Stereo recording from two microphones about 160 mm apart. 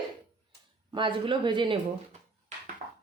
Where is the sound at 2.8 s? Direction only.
40° right (ahead or behind).